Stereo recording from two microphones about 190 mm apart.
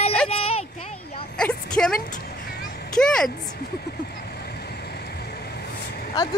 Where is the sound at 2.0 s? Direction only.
45° left (ahead or behind).